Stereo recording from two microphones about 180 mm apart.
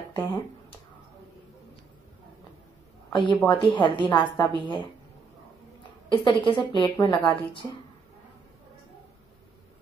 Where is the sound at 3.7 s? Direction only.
25° left (ahead or behind).